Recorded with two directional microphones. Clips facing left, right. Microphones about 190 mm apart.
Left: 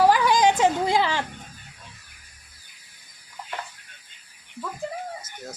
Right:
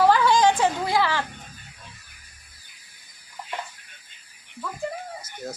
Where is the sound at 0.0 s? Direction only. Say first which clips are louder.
Even; 15° left (ahead or behind).